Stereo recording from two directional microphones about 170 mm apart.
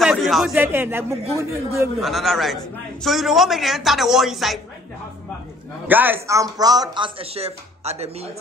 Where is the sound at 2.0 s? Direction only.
Centre (ahead or behind).